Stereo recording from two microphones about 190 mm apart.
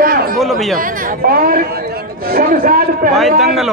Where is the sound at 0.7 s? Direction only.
50° right (ahead or behind).